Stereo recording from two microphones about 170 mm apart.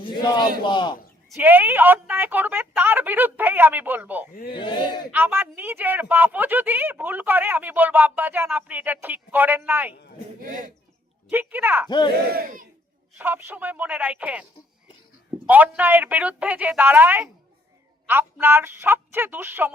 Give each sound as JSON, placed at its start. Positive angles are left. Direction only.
{"t": 0.0, "sound": "a man's voice", "side_deg": 25}
{"t": 1.3, "sound": "a woman's voice", "side_deg": -10}
{"t": 4.5, "sound": "a man's voice", "side_deg": 30}
{"t": 5.1, "sound": "a woman's voice", "side_deg": -10}
{"t": 10.4, "sound": "speech", "side_deg": -50}
{"t": 11.3, "sound": "a woman's voice", "side_deg": -10}
{"t": 11.9, "sound": "a man's voice", "side_deg": 25}
{"t": 12.4, "sound": "speech", "side_deg": -55}
{"t": 13.1, "sound": "a woman's voice", "side_deg": -10}
{"t": 15.4, "sound": "a woman's voice", "side_deg": -10}